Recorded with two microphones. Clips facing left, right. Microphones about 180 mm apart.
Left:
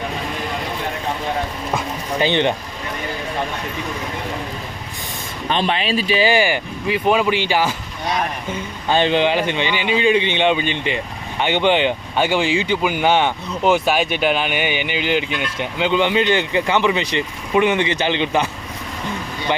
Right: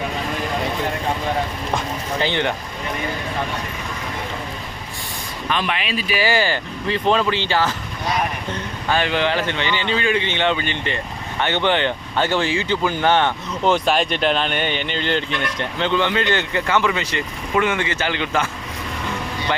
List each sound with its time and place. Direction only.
2.1 s speech: 20° left (ahead or behind)
5.5 s speech: 30° left (ahead or behind); by 7.8 s 10° left (ahead or behind)
8.9 s speech: 20° left (ahead or behind)